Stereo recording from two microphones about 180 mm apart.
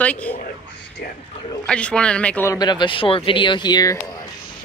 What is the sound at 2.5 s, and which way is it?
Speech, 20° left (ahead or behind).